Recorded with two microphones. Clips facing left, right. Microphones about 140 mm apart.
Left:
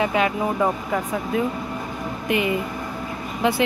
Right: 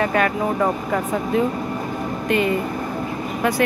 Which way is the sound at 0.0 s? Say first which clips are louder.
Right 1 dB; 15° left (ahead or behind).